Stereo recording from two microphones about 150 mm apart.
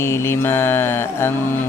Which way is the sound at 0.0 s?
15° left (ahead or behind).